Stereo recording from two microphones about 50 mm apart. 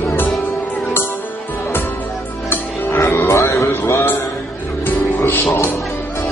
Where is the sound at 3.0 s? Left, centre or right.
Left.